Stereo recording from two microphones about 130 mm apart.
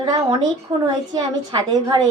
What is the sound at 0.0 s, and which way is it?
A woman's voice, 35° right (ahead or behind).